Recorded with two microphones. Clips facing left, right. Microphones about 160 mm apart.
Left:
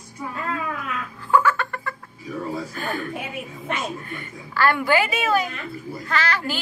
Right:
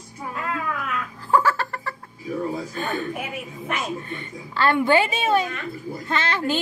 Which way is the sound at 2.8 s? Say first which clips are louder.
Right 4 dB; 25° right (ahead or behind).